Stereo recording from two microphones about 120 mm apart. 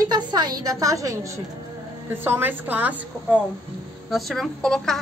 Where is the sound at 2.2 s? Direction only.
15° right (ahead or behind).